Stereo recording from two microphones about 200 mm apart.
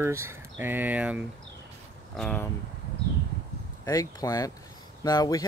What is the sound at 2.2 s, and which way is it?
Speech, 5° left (ahead or behind).